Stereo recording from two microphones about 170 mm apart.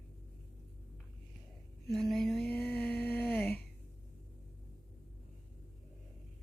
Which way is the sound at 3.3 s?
10° left (ahead or behind).